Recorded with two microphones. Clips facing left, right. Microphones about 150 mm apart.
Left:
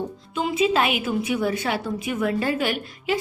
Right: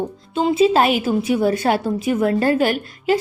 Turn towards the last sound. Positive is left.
turn(degrees=-40)  # may be behind; listen again after turning